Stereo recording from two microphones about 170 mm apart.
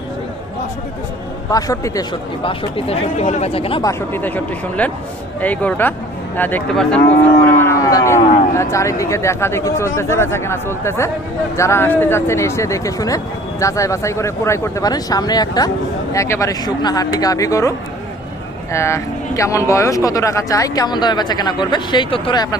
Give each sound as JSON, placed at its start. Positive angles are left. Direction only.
{"t": 1.5, "sound": "speech", "side_deg": 20}
{"t": 2.4, "sound": "speech", "side_deg": 30}
{"t": 3.8, "sound": "speech", "side_deg": 10}